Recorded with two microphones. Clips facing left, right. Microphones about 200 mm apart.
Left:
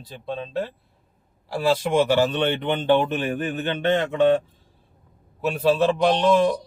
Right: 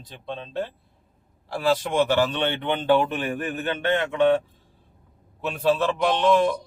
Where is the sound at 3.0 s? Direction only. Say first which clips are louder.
Left 2 dB; 20° left (ahead or behind).